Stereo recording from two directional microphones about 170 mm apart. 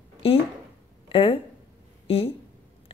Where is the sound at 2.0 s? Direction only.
35° left (ahead or behind).